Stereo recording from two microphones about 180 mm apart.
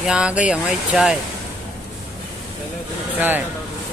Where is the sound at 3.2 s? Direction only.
10° right (ahead or behind).